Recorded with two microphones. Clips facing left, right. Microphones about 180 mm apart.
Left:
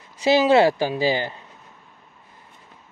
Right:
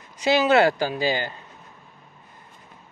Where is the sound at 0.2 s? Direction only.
25° left (ahead or behind).